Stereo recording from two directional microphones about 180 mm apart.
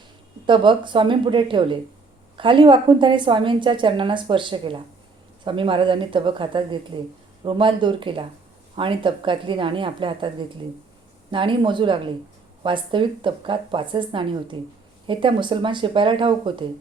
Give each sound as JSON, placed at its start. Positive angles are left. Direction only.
{"t": 0.4, "sound": "a woman's voice", "side_deg": -25}